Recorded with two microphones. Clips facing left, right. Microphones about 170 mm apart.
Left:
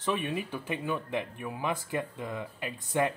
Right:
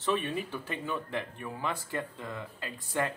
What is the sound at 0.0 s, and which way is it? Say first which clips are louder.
Speech: even; 15° left (ahead or behind).